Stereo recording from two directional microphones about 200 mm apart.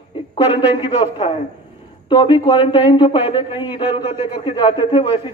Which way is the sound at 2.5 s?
25° left (ahead or behind).